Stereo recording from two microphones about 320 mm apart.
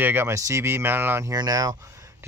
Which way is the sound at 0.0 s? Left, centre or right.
Centre.